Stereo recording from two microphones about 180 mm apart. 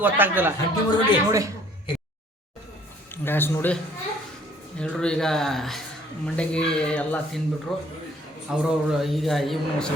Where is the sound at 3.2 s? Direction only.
10° left (ahead or behind).